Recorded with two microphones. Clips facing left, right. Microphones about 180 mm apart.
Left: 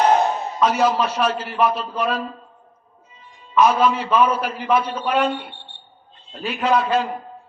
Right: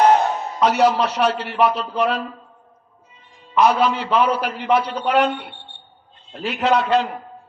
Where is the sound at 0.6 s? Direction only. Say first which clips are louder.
Right 2 dB; 70° right (ahead or behind).